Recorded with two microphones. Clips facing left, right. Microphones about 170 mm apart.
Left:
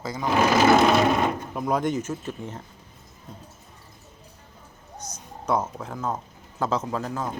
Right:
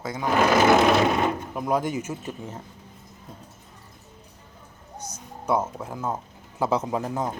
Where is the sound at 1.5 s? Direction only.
Centre (ahead or behind).